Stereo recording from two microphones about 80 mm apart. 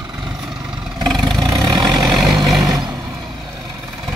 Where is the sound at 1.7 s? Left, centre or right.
Right.